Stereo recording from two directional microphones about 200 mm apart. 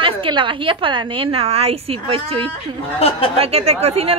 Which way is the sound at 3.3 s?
30° right (ahead or behind).